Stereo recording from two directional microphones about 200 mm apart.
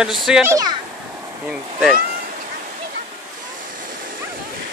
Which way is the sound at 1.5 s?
5° right (ahead or behind).